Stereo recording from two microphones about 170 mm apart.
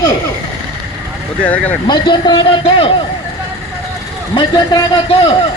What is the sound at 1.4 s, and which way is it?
Speech, 10° left (ahead or behind).